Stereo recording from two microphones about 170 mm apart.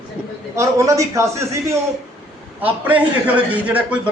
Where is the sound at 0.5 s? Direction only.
20° right (ahead or behind).